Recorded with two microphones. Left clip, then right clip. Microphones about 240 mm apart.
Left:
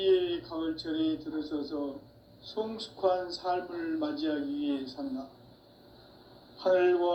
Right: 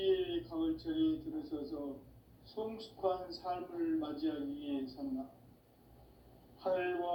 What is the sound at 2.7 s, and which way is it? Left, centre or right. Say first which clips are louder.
Speech: left 8 dB; left.